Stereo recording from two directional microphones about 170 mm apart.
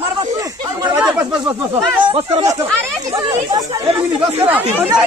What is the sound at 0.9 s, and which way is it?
Snake, 10° right (ahead or behind).